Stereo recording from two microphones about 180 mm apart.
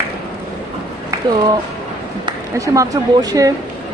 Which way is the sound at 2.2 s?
20° right (ahead or behind).